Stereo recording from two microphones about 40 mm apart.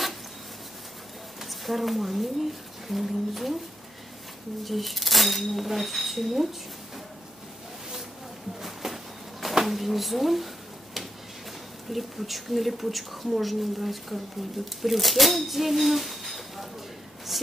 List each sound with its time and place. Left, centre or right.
1.4 s speech: centre
4.6 s speech: centre
8.5 s a sound: centre
9.7 s speech: centre
11.9 s speech: centre
17.3 s a sound: centre